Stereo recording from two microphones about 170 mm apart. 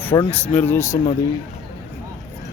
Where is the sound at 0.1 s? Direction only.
25° left (ahead or behind).